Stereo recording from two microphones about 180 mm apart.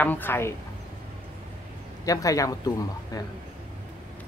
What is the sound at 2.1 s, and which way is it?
Speech, 20° left (ahead or behind).